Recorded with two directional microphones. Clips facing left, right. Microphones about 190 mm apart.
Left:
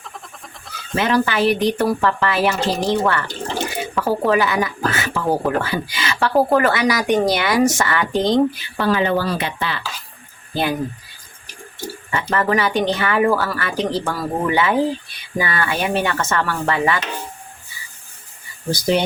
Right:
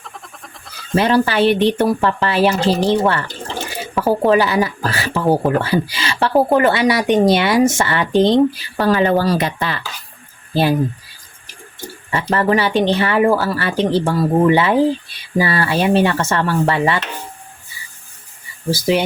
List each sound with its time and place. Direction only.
0.0 s a sound: centre (ahead or behind)
0.9 s speech: 35° right (ahead or behind)
10.5 s speech: 30° right (ahead or behind)
12.1 s speech: 30° right (ahead or behind)
18.7 s speech: 5° right (ahead or behind)